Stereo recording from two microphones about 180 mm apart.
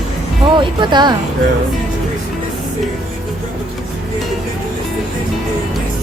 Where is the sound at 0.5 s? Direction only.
25° right (ahead or behind).